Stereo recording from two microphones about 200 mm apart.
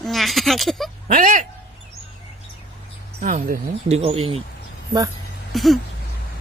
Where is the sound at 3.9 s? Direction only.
30° right (ahead or behind).